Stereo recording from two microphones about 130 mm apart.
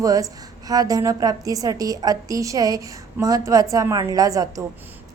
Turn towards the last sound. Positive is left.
turn(degrees=-25)  # may be behind; listen again after turning